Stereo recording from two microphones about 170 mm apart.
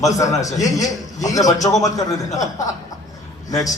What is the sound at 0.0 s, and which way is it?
Speech, 20° left (ahead or behind).